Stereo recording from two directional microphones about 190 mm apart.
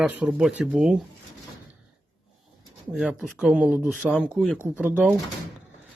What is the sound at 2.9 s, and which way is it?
Speech, 5° right (ahead or behind).